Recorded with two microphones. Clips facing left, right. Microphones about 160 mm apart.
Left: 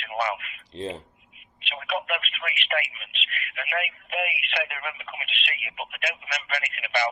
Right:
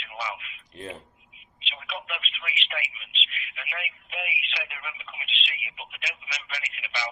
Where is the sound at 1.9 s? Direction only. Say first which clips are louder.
Left 9 dB; 55° left (ahead or behind).